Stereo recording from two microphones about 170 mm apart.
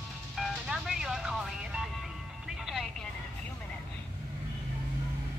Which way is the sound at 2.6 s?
5° right (ahead or behind).